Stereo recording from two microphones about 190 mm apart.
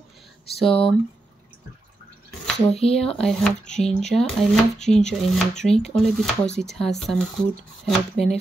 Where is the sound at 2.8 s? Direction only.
30° left (ahead or behind).